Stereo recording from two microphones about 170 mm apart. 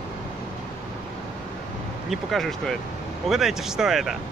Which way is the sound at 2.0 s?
Centre (ahead or behind).